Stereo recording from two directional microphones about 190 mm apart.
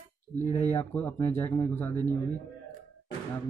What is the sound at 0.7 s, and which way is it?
Speech, 10° left (ahead or behind).